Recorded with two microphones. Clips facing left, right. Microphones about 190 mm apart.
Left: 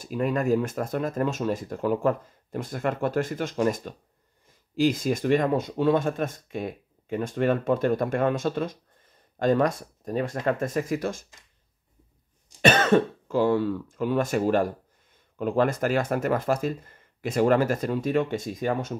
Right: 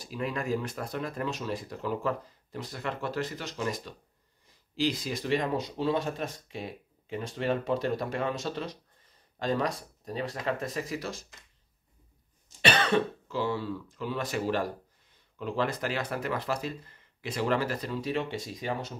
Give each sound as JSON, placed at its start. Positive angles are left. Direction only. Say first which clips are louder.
{"t": 0.0, "sound": "speech", "louder": "left 8 dB", "side_deg": 50}
{"t": 12.6, "sound": "speech", "louder": "left 6 dB", "side_deg": 45}